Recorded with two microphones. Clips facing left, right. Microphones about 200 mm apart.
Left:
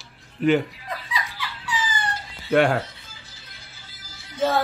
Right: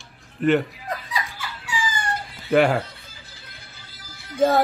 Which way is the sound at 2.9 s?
55° right (ahead or behind).